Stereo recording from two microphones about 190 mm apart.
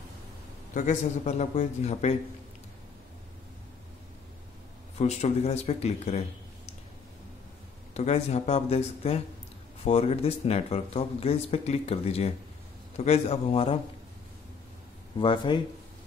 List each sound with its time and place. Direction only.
0.7 s speech: 40° left (ahead or behind)
4.9 s speech: 35° left (ahead or behind)
7.9 s speech: 35° left (ahead or behind)
15.1 s speech: 25° left (ahead or behind)